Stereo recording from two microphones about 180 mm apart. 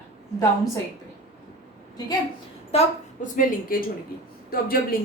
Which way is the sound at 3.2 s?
50° left (ahead or behind).